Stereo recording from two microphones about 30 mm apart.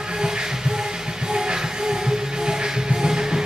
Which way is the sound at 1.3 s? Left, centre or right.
Right.